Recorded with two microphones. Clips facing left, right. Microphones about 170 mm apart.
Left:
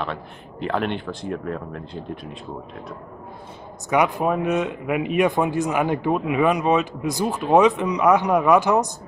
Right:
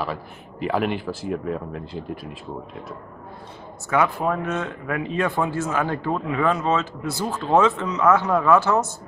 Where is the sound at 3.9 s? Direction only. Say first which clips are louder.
Left 2 dB; 15° left (ahead or behind).